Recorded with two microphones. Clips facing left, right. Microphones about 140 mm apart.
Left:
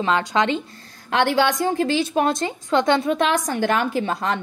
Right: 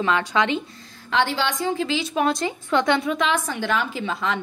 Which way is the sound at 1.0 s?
55° left (ahead or behind).